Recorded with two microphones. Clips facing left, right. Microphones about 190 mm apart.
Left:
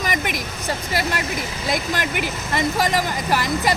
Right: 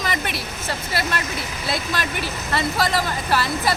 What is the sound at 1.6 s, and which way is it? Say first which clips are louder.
Speech: left 2 dB; 15° left (ahead or behind).